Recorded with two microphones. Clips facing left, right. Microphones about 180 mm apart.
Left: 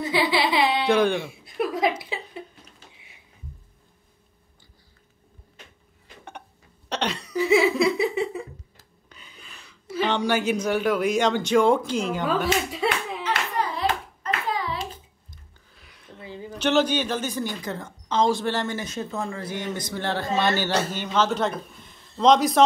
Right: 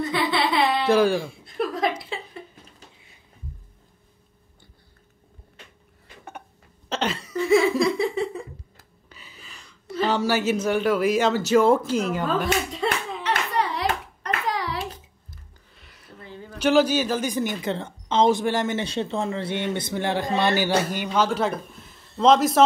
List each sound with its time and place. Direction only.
0.0 s chuckle: 5° left (ahead or behind)
6.9 s laughter: centre (ahead or behind)
9.1 s speech: 5° right (ahead or behind)
13.2 s hands: 75° right (ahead or behind)
15.2 s a sound: centre (ahead or behind)
16.2 s a sound: 10° left (ahead or behind)
16.5 s a woman's voice: 10° right (ahead or behind); by 20.0 s 25° right (ahead or behind)
20.0 s a man's voice: 15° right (ahead or behind)